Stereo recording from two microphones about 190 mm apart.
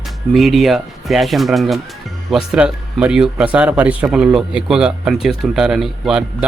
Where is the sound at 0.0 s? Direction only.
Centre (ahead or behind).